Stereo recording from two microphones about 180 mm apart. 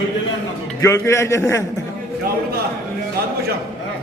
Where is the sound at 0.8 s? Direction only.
15° left (ahead or behind).